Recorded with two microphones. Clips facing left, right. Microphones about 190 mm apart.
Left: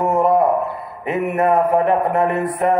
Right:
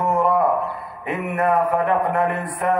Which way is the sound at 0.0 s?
25° left (ahead or behind).